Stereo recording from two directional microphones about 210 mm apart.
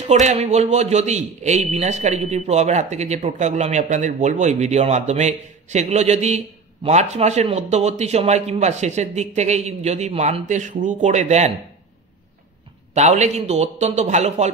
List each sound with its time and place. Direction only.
0.0 s a man's voice: 35° right (ahead or behind)
12.9 s a man's voice: 35° right (ahead or behind)